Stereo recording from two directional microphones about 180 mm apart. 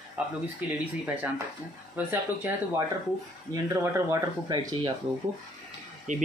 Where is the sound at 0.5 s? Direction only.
5° right (ahead or behind).